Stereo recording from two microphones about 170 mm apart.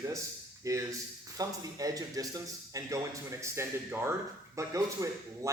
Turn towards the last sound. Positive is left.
turn(degrees=-20)  # may be behind; listen again after turning